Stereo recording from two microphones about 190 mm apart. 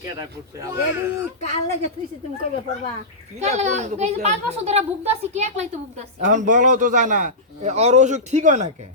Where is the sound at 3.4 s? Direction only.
35° right (ahead or behind).